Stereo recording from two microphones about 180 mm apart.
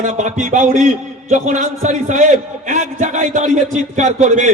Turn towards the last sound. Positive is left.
turn(degrees=-40)  # may be behind; listen again after turning